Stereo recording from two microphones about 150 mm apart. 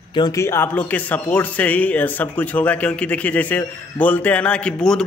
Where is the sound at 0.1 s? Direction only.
25° left (ahead or behind).